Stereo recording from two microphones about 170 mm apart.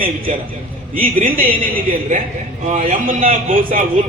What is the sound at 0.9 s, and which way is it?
Speech, 55° right (ahead or behind).